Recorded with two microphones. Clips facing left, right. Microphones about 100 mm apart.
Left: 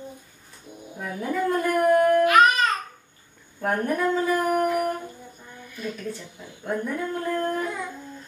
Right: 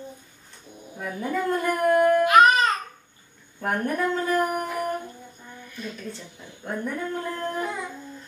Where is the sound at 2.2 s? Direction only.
20° right (ahead or behind).